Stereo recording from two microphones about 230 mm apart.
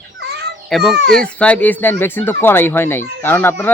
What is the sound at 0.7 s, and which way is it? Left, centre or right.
Speech, centre.